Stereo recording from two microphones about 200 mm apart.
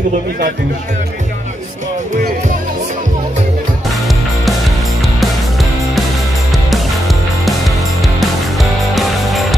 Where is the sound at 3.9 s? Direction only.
Centre (ahead or behind).